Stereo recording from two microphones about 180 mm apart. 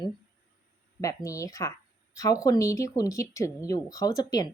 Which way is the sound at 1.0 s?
15° left (ahead or behind).